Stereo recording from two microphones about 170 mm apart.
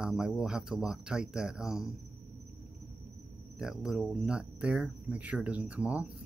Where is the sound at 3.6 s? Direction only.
5° right (ahead or behind).